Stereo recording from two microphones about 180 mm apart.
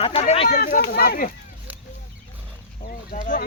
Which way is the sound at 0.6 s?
50° left (ahead or behind).